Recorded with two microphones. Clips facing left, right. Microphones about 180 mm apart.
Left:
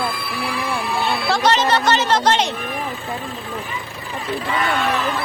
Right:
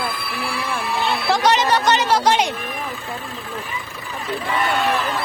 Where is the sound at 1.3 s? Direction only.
15° right (ahead or behind).